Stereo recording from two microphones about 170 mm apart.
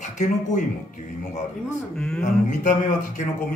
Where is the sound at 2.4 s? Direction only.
50° left (ahead or behind).